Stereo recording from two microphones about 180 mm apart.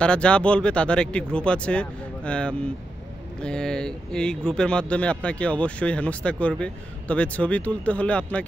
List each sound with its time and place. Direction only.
0.0 s speech: 5° left (ahead or behind)